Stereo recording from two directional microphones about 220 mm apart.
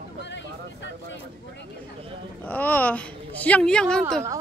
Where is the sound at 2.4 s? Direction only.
5° left (ahead or behind).